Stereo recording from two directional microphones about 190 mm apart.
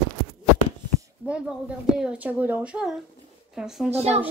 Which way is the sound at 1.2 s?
5° right (ahead or behind).